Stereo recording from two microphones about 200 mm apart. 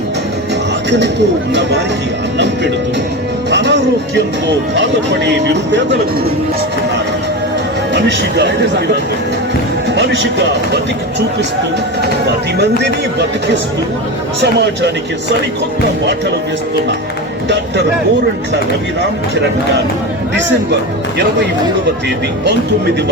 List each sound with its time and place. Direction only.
0.9 s speech: 60° right (ahead or behind)
3.5 s speech: 60° right (ahead or behind)
7.9 s speech: 60° right (ahead or behind)
9.9 s speech: 60° right (ahead or behind)
12.5 s speech: 60° right (ahead or behind)